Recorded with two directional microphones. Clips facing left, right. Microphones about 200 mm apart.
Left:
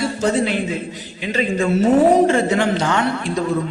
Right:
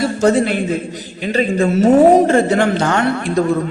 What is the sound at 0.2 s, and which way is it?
A woman's voice, 50° right (ahead or behind).